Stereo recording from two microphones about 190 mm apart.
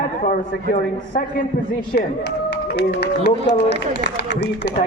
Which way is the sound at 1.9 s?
60° left (ahead or behind).